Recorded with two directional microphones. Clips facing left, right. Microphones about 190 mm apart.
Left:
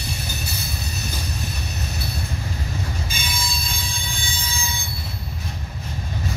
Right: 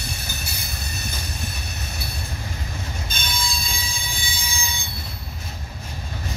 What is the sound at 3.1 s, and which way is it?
Train, 10° left (ahead or behind).